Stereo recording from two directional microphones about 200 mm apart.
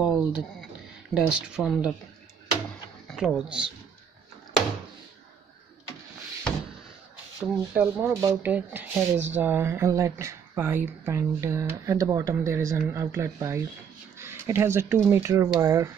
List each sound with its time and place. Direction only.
0.0 s speech: 5° right (ahead or behind)
3.2 s speech: 5° right (ahead or behind)
7.3 s speech: 10° right (ahead or behind)
14.1 s a sound: 10° right (ahead or behind)
15.0 s speech: 15° right (ahead or behind)